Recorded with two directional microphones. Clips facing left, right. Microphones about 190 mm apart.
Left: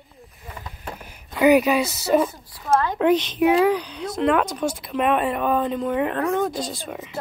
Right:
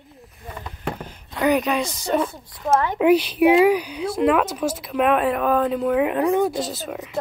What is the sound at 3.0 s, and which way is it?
Speech, 5° right (ahead or behind).